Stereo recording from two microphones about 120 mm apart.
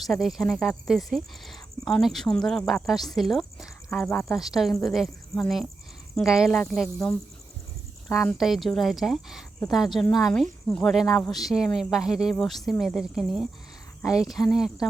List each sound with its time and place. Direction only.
0.0 s speech: centre (ahead or behind)
4.1 s speech: 20° left (ahead or behind)
4.4 s speech: centre (ahead or behind)
8.0 s speech: 5° left (ahead or behind)